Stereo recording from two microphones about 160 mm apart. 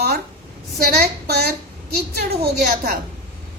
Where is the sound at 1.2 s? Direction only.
80° right.